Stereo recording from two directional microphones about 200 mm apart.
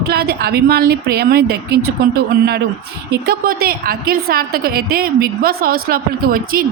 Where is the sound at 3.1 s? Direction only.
50° right (ahead or behind).